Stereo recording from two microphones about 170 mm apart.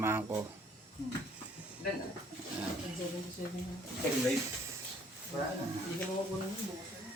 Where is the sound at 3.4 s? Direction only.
50° left (ahead or behind).